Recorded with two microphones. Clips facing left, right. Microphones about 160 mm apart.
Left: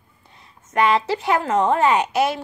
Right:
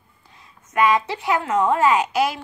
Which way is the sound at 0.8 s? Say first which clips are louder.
Even; 30° left (ahead or behind).